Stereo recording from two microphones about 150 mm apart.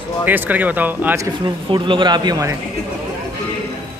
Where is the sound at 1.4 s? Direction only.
30° right (ahead or behind).